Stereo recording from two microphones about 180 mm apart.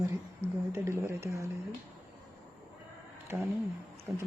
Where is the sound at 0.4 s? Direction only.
15° right (ahead or behind).